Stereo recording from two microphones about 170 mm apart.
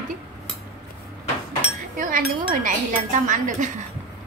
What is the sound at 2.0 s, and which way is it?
Chink, 55° right (ahead or behind).